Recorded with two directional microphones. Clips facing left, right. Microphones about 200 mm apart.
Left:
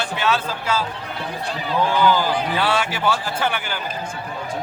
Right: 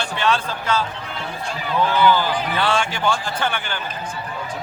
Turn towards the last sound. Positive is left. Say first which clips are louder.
# left 1 dB
turn(degrees=10)  # may be behind; listen again after turning